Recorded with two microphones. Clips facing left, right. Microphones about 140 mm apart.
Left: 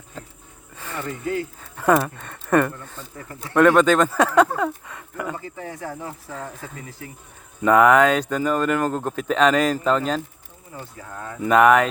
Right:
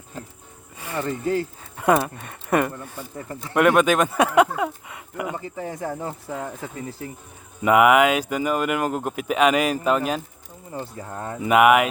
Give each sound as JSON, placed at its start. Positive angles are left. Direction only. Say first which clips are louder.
{"t": 0.8, "sound": "a sound", "louder": "right 4 dB", "side_deg": -15}
{"t": 1.0, "sound": "speech", "louder": "right 2 dB", "side_deg": -30}
{"t": 1.9, "sound": "speech", "louder": "left 1 dB", "side_deg": -15}
{"t": 3.2, "sound": "speech", "louder": "right 3 dB", "side_deg": -25}
{"t": 3.5, "sound": "speech", "louder": "left 2 dB", "side_deg": -15}
{"t": 7.6, "sound": "speech", "louder": "left 1 dB", "side_deg": -10}
{"t": 10.7, "sound": "speech", "louder": "right 5 dB", "side_deg": -35}
{"t": 11.3, "sound": "speech", "louder": "left 1 dB", "side_deg": -10}